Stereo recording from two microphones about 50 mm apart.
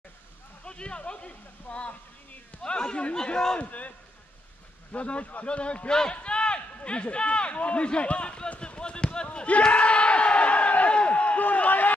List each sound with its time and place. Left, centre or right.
0.7 s a sound: centre
2.6 s a man's voice: centre
3.6 s a man's voice: left
4.9 s a man's voice: left
6.1 s run: left